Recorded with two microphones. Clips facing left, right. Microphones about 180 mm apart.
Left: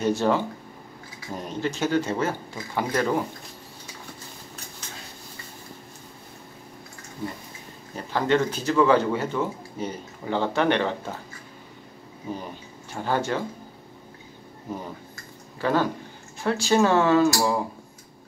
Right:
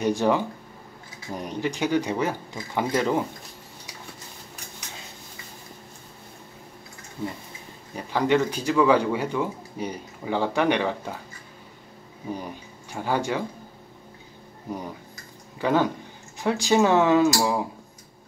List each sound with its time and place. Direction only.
0.0 s speech: 15° right (ahead or behind)
7.9 s speech: 10° right (ahead or behind)
12.9 s speech: 10° right (ahead or behind)
15.6 s speech: 15° right (ahead or behind)